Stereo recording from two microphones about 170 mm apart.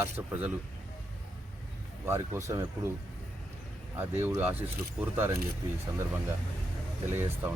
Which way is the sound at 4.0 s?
15° right (ahead or behind).